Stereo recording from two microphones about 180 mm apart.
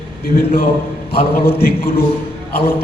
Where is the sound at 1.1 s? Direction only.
60° left (ahead or behind).